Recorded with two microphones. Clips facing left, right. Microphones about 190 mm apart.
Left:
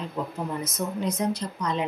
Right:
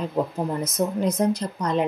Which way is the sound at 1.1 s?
50° right (ahead or behind).